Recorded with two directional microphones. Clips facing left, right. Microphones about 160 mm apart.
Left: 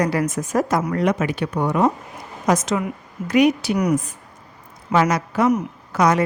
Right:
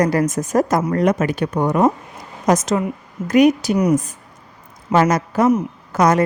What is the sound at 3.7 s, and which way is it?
Speech, 30° right (ahead or behind).